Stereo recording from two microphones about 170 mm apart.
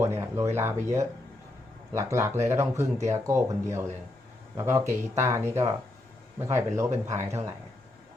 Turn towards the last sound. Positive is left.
turn(degrees=-15)  # may be behind; listen again after turning